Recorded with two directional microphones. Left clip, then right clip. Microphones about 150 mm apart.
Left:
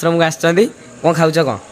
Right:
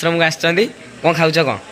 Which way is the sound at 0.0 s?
35° left (ahead or behind).